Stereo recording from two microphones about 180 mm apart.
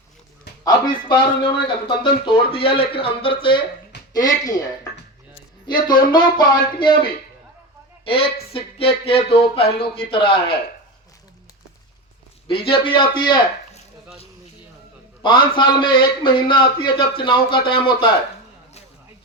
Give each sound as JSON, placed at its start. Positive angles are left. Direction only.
{"t": 0.6, "sound": "a man's voice", "side_deg": 25}
{"t": 4.4, "sound": "a man's voice", "side_deg": 20}
{"t": 8.0, "sound": "speech", "side_deg": 30}
{"t": 12.5, "sound": "a man's voice", "side_deg": 30}
{"t": 15.2, "sound": "a man's voice", "side_deg": 25}